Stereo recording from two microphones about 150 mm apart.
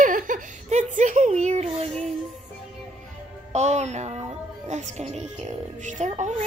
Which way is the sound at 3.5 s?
50° right (ahead or behind).